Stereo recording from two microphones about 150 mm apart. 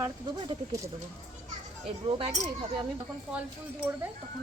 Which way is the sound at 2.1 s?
35° right (ahead or behind).